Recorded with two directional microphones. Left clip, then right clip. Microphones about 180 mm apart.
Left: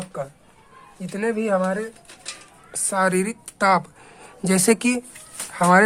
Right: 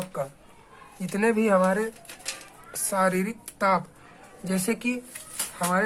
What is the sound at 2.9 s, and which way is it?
Speech, 25° left (ahead or behind).